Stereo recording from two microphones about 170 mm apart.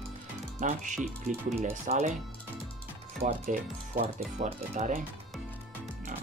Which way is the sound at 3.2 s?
60° right (ahead or behind).